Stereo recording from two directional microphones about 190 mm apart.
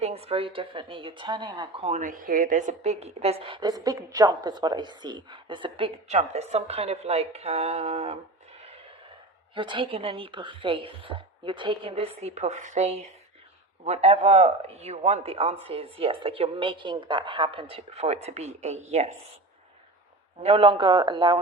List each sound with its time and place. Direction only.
0.0 s a woman's voice: 30° right (ahead or behind)
1.8 s a woman's voice: 40° right (ahead or behind)
9.6 s a woman's voice: 25° right (ahead or behind)
20.4 s a woman's voice: 30° right (ahead or behind)